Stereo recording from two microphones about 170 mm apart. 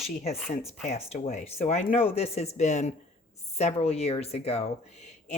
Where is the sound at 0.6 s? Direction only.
35° left (ahead or behind).